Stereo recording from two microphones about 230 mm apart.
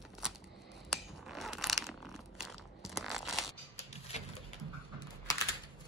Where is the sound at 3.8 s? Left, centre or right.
Left.